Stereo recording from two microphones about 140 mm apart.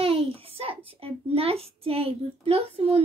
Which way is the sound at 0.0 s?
45° right (ahead or behind).